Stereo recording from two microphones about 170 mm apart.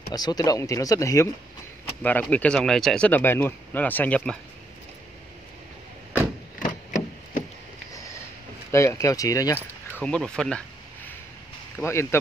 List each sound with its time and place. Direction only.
0.1 s speech: 25° left (ahead or behind)
6.6 s a sound: 55° left (ahead or behind)
8.7 s speech: 20° left (ahead or behind)
10.0 s speech: 5° left (ahead or behind)
11.8 s speech: 15° left (ahead or behind)